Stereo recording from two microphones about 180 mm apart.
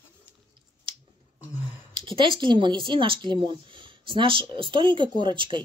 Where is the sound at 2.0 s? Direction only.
25° right (ahead or behind).